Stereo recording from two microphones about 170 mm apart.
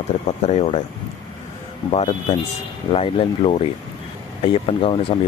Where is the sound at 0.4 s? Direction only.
40° left (ahead or behind).